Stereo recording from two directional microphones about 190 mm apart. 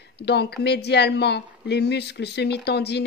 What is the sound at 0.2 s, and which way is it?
Speech, 60° left (ahead or behind).